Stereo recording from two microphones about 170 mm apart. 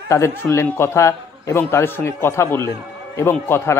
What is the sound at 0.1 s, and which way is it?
A man's voice, 15° left (ahead or behind).